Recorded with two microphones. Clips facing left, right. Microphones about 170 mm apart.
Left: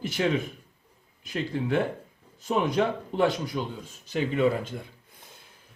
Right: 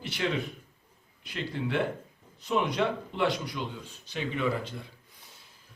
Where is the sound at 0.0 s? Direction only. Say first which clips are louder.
Left 4 dB; 45° left (ahead or behind).